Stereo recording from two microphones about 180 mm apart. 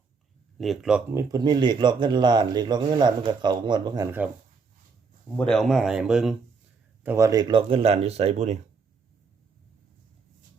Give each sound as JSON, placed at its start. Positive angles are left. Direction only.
{"t": 0.6, "sound": "speech", "side_deg": 0}
{"t": 1.1, "sound": "speech", "side_deg": -20}
{"t": 5.4, "sound": "speech", "side_deg": 5}
{"t": 7.0, "sound": "speech", "side_deg": -15}